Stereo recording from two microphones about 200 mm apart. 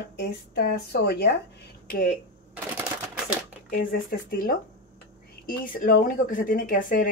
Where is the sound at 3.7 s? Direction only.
45° left (ahead or behind).